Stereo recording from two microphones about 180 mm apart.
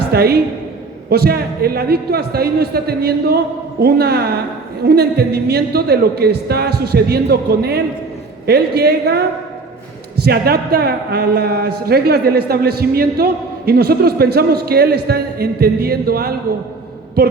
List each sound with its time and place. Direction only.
0.1 s a woman's voice: 60° right (ahead or behind)